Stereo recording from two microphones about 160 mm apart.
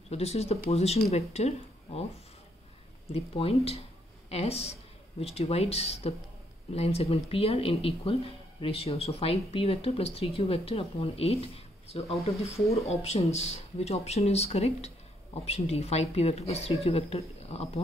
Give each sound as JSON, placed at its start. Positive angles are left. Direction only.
{"t": 0.1, "sound": "speech", "side_deg": 40}
{"t": 3.1, "sound": "speech", "side_deg": 40}